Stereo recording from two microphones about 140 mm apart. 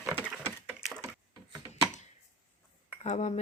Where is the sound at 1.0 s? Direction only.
25° right (ahead or behind).